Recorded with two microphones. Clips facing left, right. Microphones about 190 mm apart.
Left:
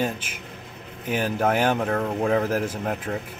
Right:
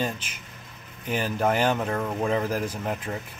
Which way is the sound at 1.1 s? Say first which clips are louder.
Left 2 dB; 10° left (ahead or behind).